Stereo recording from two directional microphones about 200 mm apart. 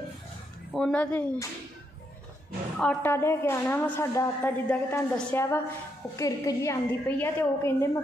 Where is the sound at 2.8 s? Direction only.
10° left (ahead or behind).